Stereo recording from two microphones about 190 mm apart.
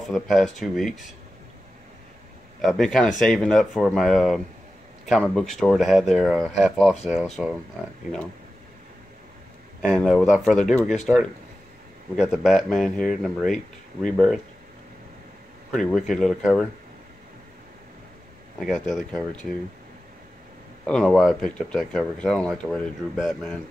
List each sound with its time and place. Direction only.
0.1 s speech: centre (ahead or behind)
2.6 s speech: centre (ahead or behind)
9.8 s speech: centre (ahead or behind)
15.7 s speech: centre (ahead or behind)
18.6 s speech: centre (ahead or behind)
20.8 s speech: 5° left (ahead or behind)